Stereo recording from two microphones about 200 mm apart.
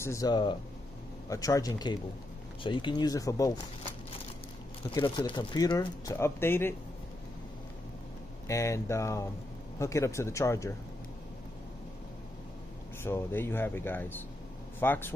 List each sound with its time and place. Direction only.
0.0 s speech: 15° left (ahead or behind)
4.9 s speech: 25° left (ahead or behind)
8.5 s speech: 15° left (ahead or behind)
13.0 s speech: 10° left (ahead or behind)